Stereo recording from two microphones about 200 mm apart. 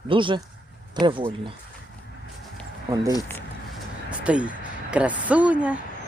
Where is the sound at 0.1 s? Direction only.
25° right (ahead or behind).